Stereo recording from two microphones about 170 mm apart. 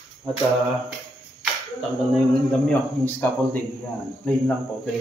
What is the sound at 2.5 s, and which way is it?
Speech, 10° left (ahead or behind).